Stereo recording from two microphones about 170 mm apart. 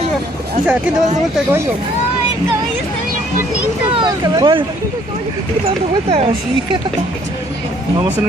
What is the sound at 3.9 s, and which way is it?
Speech, 25° right (ahead or behind).